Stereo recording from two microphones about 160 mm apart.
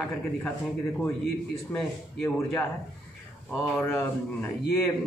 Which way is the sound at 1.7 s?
10° left (ahead or behind).